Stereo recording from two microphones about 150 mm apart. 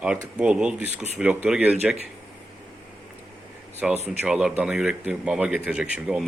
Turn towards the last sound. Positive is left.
turn(degrees=-5)  # may be behind; listen again after turning